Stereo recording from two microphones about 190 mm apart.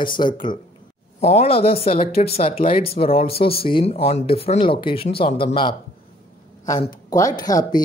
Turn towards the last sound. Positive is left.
turn(degrees=20)  # may be behind; listen again after turning